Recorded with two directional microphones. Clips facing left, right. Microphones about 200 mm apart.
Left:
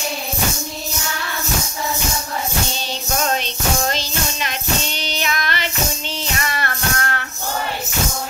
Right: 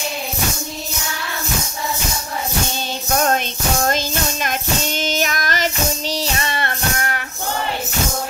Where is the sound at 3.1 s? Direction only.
50° right (ahead or behind); by 7.2 s 15° right (ahead or behind).